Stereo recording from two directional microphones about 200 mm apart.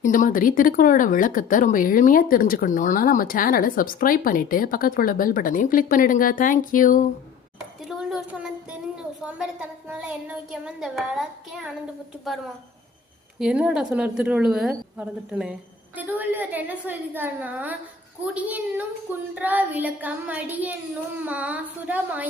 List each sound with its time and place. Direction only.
0.0 s speech: 40° left (ahead or behind)
7.8 s a sound: 5° right (ahead or behind)
9.2 s a woman's voice: 5° right (ahead or behind)
13.4 s a woman's voice: 5° right (ahead or behind)